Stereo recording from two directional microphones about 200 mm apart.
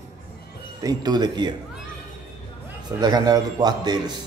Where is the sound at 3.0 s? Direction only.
20° right (ahead or behind).